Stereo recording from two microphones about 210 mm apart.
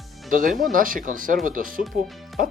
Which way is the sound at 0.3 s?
40° right (ahead or behind).